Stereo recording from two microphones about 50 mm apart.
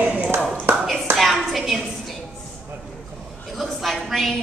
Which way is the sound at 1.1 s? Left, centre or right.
Centre.